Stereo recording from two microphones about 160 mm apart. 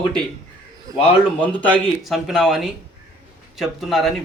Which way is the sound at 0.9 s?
20° right (ahead or behind).